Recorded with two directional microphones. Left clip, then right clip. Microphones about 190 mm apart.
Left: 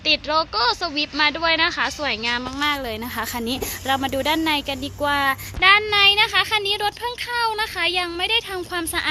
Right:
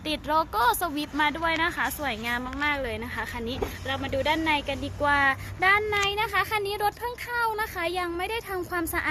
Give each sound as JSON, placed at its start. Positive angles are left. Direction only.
{"t": 0.0, "sound": "speech", "side_deg": 0}
{"t": 3.4, "sound": "speech", "side_deg": 40}
{"t": 5.5, "sound": "speech", "side_deg": 10}